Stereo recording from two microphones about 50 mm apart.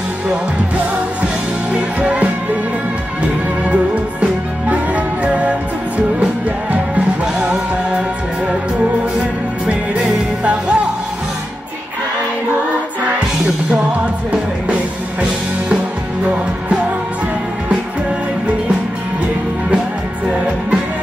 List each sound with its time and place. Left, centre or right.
1.7 s music: right
3.6 s music: right
7.3 s music: centre
10.4 s music: right